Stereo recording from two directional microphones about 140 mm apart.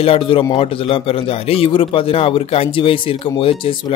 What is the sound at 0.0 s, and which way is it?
A man's voice, 40° left (ahead or behind).